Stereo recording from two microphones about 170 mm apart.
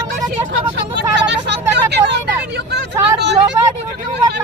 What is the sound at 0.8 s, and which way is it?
Vehicle, 90° right.